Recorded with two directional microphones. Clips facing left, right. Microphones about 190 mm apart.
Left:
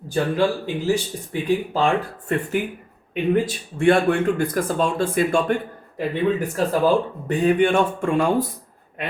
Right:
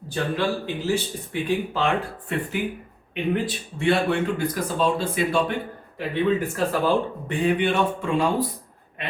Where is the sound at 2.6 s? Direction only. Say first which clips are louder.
Even; 50° left (ahead or behind).